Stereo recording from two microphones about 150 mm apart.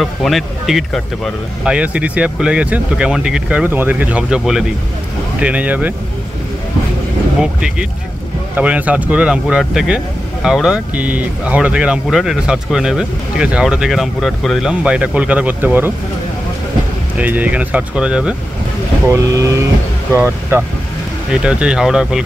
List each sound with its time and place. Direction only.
0.0 s speech: centre (ahead or behind)
8.5 s speech: 10° right (ahead or behind)
17.2 s speech: 10° right (ahead or behind)
19.0 s speech: 20° right (ahead or behind); by 22.2 s 5° right (ahead or behind)